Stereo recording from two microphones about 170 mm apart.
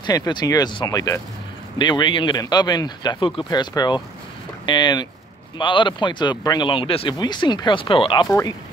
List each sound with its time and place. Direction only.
0.0 s speech: 25° left (ahead or behind)
8.3 s speech: 20° left (ahead or behind)